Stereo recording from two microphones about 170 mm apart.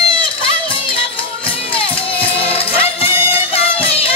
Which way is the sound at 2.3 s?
35° left (ahead or behind).